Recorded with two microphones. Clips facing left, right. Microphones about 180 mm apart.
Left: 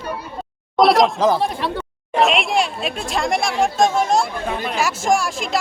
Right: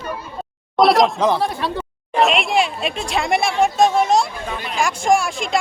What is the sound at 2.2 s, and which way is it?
Speech, centre (ahead or behind).